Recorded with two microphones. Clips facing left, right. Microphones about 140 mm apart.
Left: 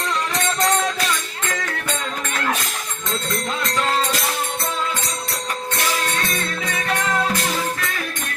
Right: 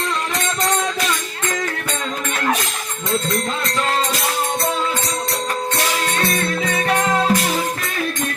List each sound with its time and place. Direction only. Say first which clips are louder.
6.7 s music: right 3 dB; 30° right (ahead or behind)